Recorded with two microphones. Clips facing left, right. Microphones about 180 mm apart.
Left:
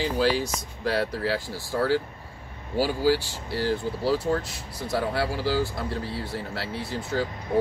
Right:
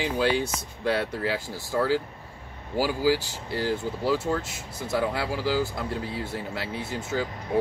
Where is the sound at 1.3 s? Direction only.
15° right (ahead or behind).